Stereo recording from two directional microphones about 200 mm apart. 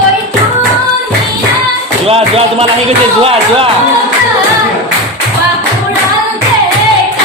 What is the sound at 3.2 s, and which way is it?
Speech, 30° right (ahead or behind).